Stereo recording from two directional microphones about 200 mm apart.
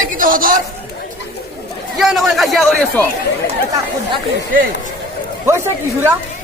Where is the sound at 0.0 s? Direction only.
40° right (ahead or behind).